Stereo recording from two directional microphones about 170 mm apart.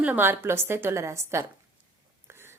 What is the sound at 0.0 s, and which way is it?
A woman's voice, 10° right (ahead or behind).